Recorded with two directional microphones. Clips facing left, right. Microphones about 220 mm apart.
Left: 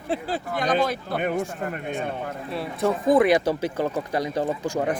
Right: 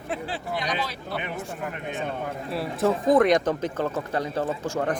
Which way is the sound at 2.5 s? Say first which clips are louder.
Right 1 dB; centre (ahead or behind).